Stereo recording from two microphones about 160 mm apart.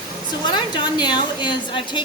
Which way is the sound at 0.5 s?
25° left (ahead or behind).